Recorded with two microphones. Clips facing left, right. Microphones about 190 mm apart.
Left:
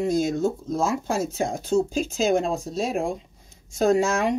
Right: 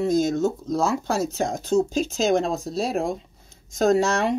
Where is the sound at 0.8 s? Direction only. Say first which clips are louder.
Even; 35° right (ahead or behind).